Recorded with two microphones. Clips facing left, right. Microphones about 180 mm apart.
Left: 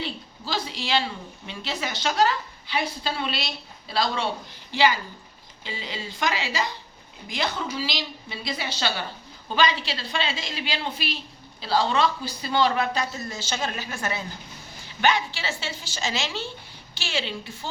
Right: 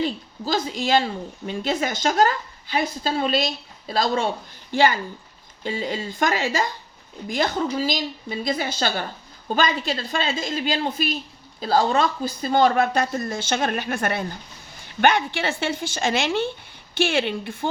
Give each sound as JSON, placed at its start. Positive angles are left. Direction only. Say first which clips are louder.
{"t": 0.0, "sound": "a woman's voice", "louder": "right 8 dB", "side_deg": -45}